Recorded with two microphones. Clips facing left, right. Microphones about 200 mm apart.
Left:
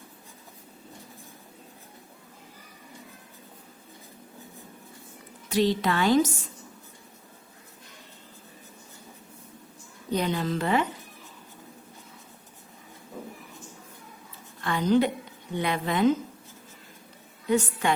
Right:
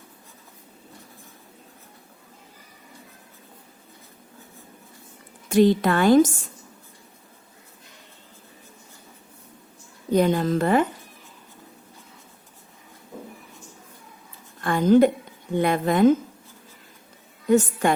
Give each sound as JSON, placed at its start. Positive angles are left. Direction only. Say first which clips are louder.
{"t": 5.5, "sound": "a woman's voice", "louder": "right 6 dB", "side_deg": -50}
{"t": 10.1, "sound": "a woman's voice", "louder": "right 7 dB", "side_deg": -50}
{"t": 14.6, "sound": "a woman's voice", "louder": "right 6 dB", "side_deg": -50}
{"t": 17.5, "sound": "a woman's voice", "louder": "right 6 dB", "side_deg": -45}